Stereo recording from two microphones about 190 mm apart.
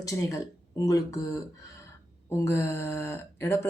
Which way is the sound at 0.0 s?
15° left (ahead or behind).